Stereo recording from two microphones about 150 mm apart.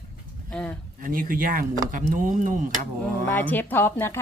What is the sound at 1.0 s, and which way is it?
Speech, 70° right (ahead or behind).